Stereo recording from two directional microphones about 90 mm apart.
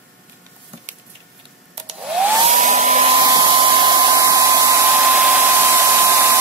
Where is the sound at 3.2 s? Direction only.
45° right (ahead or behind).